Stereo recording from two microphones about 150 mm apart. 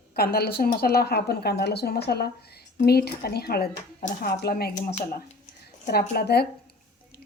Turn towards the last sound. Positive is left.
turn(degrees=90)